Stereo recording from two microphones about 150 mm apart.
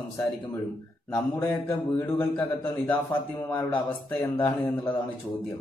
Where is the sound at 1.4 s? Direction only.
15° left (ahead or behind).